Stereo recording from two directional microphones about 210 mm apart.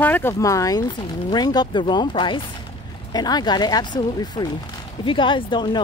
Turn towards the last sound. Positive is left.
turn(degrees=20)  # may be behind; listen again after turning